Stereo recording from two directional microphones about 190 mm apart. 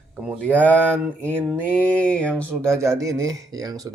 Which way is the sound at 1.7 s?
5° left (ahead or behind).